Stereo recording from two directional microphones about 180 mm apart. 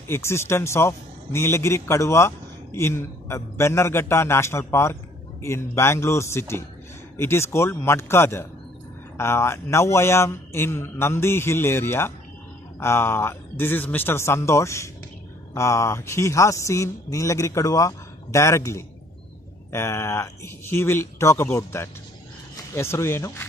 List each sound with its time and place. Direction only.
0.1 s a man's voice: 15° left (ahead or behind)